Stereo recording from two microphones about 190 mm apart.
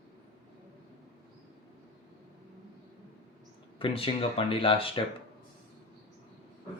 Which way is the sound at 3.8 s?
30° left (ahead or behind).